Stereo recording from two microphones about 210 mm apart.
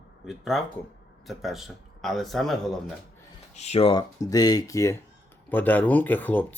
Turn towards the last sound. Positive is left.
turn(degrees=10)  # may be behind; listen again after turning